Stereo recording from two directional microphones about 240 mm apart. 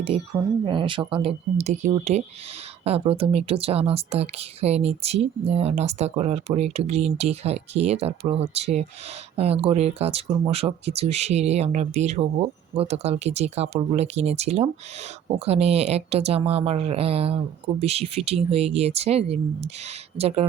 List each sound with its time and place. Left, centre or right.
0.1 s speech: right